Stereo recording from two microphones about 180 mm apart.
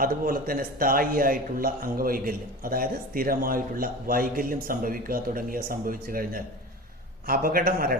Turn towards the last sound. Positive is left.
turn(degrees=-55)  # may be behind; listen again after turning